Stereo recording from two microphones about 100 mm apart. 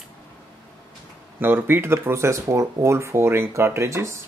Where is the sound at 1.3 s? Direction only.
20° right (ahead or behind).